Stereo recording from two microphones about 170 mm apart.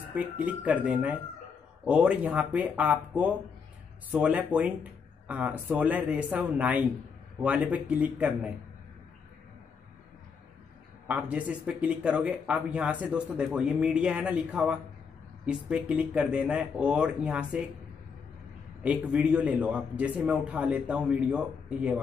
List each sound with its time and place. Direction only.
0.1 s a man's voice: 10° right (ahead or behind)
11.1 s a man's voice: 10° right (ahead or behind)
18.8 s a man's voice: 5° right (ahead or behind)